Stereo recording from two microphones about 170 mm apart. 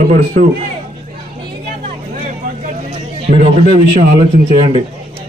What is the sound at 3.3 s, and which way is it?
Speech, 60° right (ahead or behind).